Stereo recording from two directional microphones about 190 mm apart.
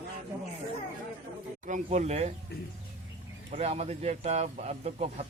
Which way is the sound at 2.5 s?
60° left (ahead or behind).